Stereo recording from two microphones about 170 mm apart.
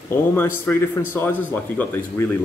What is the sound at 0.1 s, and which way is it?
Speech, 15° left (ahead or behind).